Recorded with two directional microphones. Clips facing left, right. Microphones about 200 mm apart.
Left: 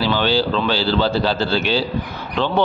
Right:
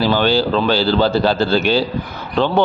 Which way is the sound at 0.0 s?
45° right (ahead or behind).